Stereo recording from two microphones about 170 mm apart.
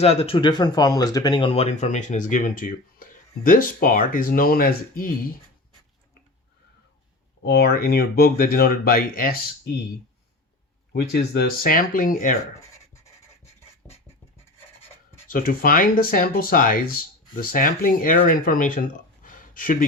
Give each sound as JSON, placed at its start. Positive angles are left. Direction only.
{"t": 0.0, "sound": "speech", "side_deg": 35}
{"t": 7.4, "sound": "speech", "side_deg": 70}
{"t": 10.9, "sound": "speech", "side_deg": 70}
{"t": 13.8, "sound": "scratch", "side_deg": 10}
{"t": 15.3, "sound": "speech", "side_deg": 55}